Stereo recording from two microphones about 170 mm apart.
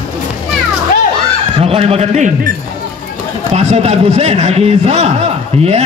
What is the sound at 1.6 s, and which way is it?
Speech, 35° right (ahead or behind).